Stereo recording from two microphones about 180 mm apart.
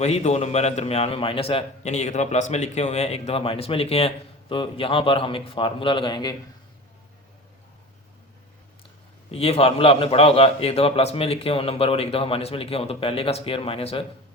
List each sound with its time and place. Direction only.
0.0 s a man's voice: 35° left (ahead or behind)
9.3 s a man's voice: 35° left (ahead or behind)